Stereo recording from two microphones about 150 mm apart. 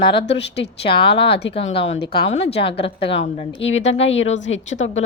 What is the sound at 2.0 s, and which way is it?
Speech, 90° left.